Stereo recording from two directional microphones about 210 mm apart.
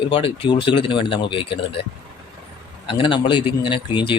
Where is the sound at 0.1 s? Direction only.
25° left (ahead or behind).